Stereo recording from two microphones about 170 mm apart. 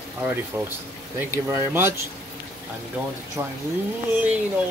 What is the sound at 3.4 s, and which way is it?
Speech, 20° right (ahead or behind).